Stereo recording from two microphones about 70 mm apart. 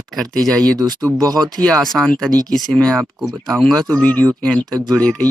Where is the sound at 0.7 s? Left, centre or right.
Right.